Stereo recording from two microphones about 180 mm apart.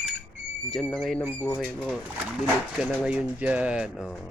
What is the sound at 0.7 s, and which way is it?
Speech, centre (ahead or behind).